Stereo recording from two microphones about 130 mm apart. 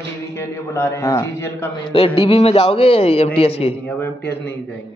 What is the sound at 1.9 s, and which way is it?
A man's voice, 45° left (ahead or behind).